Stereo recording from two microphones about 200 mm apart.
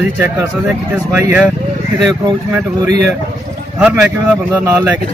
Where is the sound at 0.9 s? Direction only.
10° right (ahead or behind).